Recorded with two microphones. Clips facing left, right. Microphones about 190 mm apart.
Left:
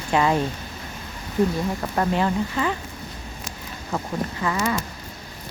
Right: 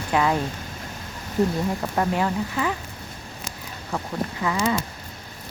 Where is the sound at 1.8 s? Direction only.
5° right (ahead or behind).